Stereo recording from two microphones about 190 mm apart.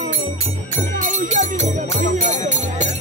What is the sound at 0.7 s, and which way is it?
Music, 45° right (ahead or behind).